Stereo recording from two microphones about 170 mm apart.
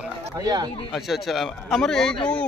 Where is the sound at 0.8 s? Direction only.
Centre (ahead or behind).